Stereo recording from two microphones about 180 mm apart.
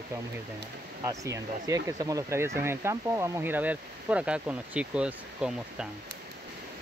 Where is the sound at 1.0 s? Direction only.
15° right (ahead or behind).